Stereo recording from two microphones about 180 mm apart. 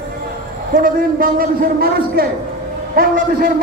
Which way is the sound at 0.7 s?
50° right (ahead or behind).